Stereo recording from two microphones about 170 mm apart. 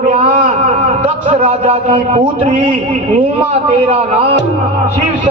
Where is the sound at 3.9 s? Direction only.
35° right (ahead or behind).